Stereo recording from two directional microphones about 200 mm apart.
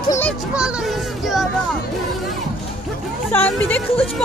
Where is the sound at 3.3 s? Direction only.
10° left (ahead or behind).